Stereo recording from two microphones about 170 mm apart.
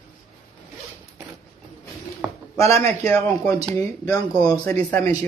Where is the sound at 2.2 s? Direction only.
5° right (ahead or behind).